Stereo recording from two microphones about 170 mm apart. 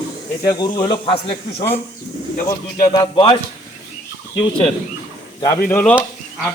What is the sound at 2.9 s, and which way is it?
Speech, 30° left (ahead or behind).